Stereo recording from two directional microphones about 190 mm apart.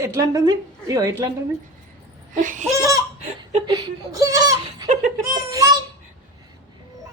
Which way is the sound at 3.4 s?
20° right (ahead or behind).